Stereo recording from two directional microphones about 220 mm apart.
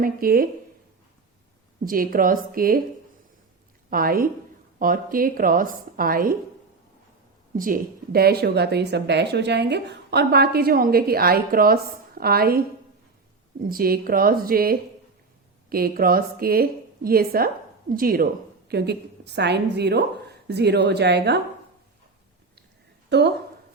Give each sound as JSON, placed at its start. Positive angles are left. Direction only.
{"t": 0.0, "sound": "a woman's voice", "side_deg": -40}
{"t": 1.8, "sound": "a woman's voice", "side_deg": -40}
{"t": 3.8, "sound": "a woman's voice", "side_deg": -40}
{"t": 7.5, "sound": "a woman's voice", "side_deg": -40}
{"t": 23.0, "sound": "speech", "side_deg": -50}